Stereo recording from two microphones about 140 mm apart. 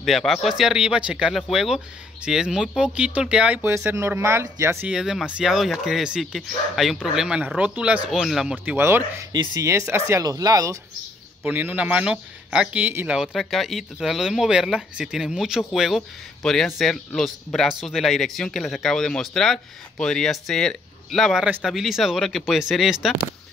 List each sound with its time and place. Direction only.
0.0 s speech: centre (ahead or behind)
3.7 s speech: 20° right (ahead or behind)
4.8 s speech: 5° right (ahead or behind)
9.3 s speech: 30° right (ahead or behind)
11.4 s speech: 15° right (ahead or behind)